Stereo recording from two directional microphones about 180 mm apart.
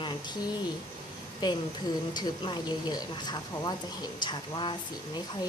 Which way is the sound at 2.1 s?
25° left (ahead or behind).